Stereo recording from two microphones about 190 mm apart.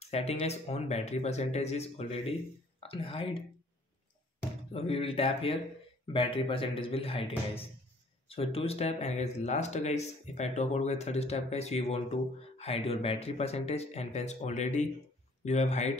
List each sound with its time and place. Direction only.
0.0 s speech: 35° left (ahead or behind)
4.7 s speech: 30° left (ahead or behind)